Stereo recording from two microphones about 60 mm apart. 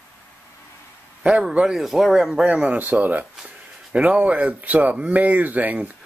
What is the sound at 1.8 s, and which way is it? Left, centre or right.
Speech, centre.